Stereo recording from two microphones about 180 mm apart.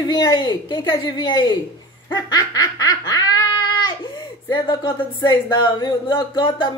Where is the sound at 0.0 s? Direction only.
25° left (ahead or behind).